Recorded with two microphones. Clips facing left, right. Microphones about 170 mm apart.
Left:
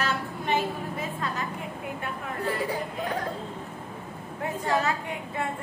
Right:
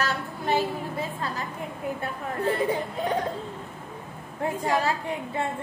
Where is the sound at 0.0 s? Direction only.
35° right (ahead or behind).